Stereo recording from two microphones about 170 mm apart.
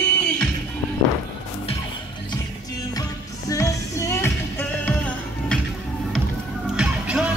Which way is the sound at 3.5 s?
20° left (ahead or behind).